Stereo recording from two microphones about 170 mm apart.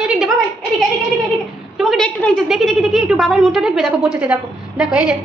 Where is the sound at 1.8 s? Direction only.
Centre (ahead or behind).